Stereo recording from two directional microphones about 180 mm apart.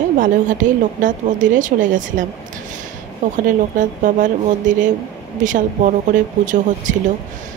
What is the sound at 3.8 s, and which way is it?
Speech, 45° right (ahead or behind).